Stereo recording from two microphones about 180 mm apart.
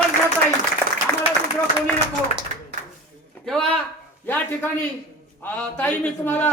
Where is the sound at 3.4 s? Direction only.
5° left (ahead or behind).